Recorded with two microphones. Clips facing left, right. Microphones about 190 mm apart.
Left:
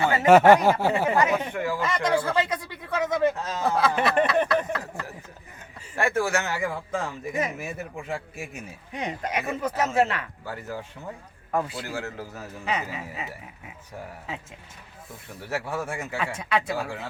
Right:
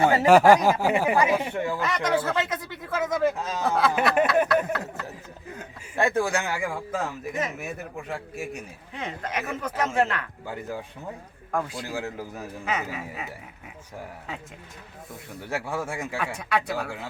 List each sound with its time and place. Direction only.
0.0 s speech: 35° right (ahead or behind)
0.3 s speech: centre (ahead or behind)
0.9 s speech: 15° right (ahead or behind)
6.0 s speech: 15° right (ahead or behind); by 8.1 s centre (ahead or behind)
8.9 s speech: 15° left (ahead or behind)
10.4 s speech: 15° right (ahead or behind)
12.6 s speech: centre (ahead or behind)
15.3 s speech: 20° right (ahead or behind)
16.1 s speech: centre (ahead or behind)